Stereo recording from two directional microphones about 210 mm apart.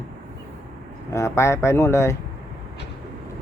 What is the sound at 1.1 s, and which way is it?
Speech, 15° left (ahead or behind).